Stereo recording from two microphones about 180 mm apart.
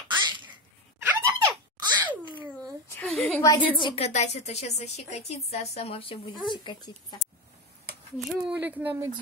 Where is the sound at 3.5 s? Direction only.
25° left (ahead or behind).